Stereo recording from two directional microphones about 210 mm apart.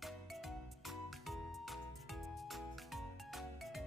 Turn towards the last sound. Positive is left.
turn(degrees=0)  # may be behind; listen again after turning